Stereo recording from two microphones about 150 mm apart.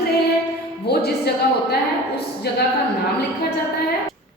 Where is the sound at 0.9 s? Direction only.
90° left.